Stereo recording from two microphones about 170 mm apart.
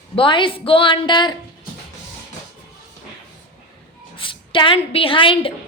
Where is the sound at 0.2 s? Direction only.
30° left (ahead or behind).